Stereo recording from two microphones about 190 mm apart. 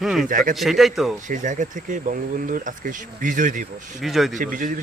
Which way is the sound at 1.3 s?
40° right (ahead or behind).